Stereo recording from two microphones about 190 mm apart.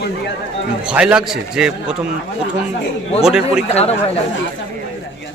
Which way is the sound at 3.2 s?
5° right (ahead or behind).